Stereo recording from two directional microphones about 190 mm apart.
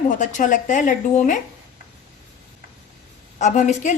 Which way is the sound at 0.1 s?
40° left (ahead or behind).